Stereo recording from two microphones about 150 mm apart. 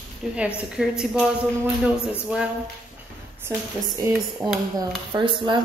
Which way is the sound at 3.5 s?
20° right (ahead or behind).